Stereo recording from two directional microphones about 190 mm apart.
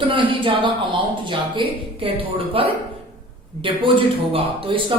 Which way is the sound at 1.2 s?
25° right (ahead or behind).